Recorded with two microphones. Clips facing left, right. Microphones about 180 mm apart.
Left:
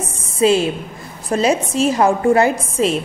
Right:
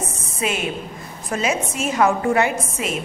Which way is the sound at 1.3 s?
35° left (ahead or behind).